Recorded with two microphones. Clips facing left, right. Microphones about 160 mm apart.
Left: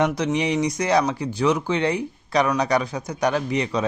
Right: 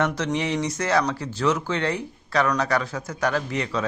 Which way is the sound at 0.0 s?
15° left (ahead or behind).